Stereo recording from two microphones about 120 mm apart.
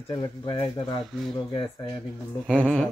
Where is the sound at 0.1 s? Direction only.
40° left (ahead or behind).